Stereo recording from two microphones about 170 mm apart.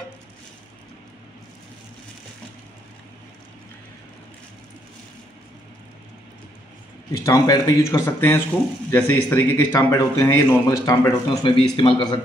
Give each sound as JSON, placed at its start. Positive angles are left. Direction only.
{"t": 7.2, "sound": "a man's voice", "side_deg": 20}